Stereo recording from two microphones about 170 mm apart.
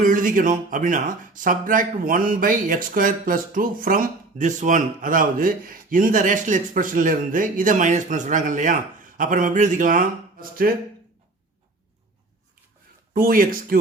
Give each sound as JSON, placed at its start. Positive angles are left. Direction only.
{"t": 0.0, "sound": "speech", "side_deg": -50}
{"t": 13.1, "sound": "speech", "side_deg": -60}